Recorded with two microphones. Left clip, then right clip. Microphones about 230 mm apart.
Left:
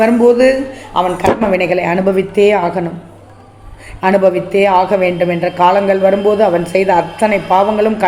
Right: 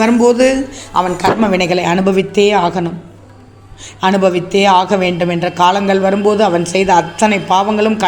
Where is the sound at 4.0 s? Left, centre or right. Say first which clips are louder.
Left 2 dB; right.